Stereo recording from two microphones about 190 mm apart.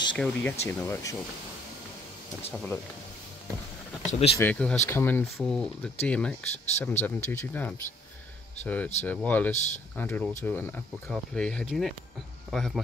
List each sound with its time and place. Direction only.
0.1 s speech: 5° left (ahead or behind)
2.5 s speech: 5° left (ahead or behind)
4.1 s speech: 35° left (ahead or behind)
4.4 s a man's voice: 5° left (ahead or behind)